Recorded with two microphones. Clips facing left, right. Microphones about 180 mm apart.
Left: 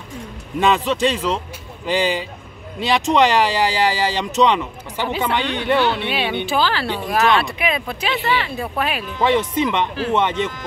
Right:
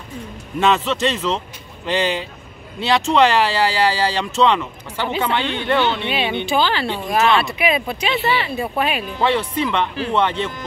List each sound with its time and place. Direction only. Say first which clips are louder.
0.6 s speech: left 1 dB; 15° left (ahead or behind)
5.8 s speech: even; 5° left (ahead or behind)
8.2 s speech: even; 15° right (ahead or behind)
8.5 s speech: right 2 dB; centre (ahead or behind)
9.2 s speech: left 2 dB; 20° left (ahead or behind)